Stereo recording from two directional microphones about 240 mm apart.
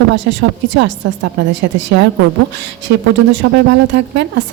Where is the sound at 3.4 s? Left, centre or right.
Right.